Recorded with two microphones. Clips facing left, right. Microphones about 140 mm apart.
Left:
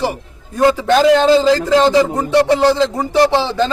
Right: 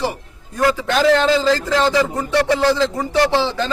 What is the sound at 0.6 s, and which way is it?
A man's voice, 20° left (ahead or behind).